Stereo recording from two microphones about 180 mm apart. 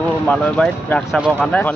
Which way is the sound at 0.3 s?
5° left (ahead or behind).